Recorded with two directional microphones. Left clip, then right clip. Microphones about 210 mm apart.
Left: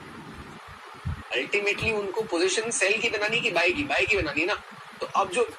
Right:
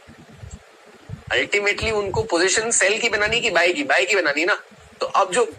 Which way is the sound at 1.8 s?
20° right (ahead or behind).